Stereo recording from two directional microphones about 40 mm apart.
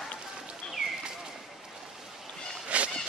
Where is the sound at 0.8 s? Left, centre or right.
Right.